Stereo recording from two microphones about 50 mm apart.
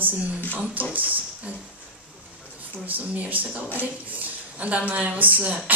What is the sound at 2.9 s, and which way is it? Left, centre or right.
A woman's voice, right.